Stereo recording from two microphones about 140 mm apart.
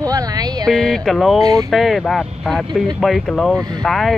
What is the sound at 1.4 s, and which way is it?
Speech, 25° right (ahead or behind).